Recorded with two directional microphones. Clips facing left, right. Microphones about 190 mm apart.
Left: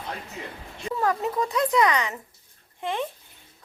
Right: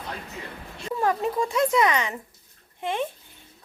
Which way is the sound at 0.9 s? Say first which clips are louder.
Right 1 dB; 25° right (ahead or behind).